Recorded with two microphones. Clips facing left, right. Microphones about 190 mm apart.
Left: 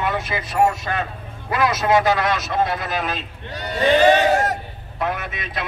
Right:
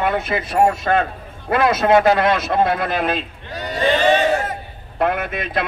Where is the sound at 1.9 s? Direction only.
55° right (ahead or behind).